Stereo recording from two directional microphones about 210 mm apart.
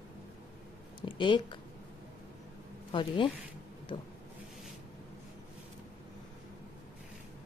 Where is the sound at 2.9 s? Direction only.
25° left (ahead or behind).